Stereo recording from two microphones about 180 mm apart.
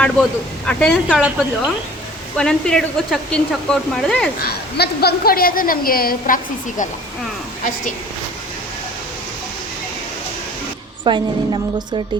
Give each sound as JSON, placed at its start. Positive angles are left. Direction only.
{"t": 0.0, "sound": "speech", "side_deg": 5}
{"t": 4.4, "sound": "a woman's voice", "side_deg": 60}
{"t": 11.0, "sound": "a woman's voice", "side_deg": -25}